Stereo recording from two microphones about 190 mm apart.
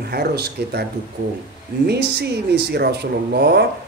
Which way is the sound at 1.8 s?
60° right (ahead or behind).